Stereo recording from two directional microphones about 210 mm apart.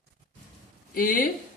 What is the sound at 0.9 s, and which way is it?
Speech, 40° left (ahead or behind).